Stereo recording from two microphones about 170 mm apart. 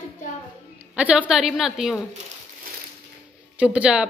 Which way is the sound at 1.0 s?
5° right (ahead or behind).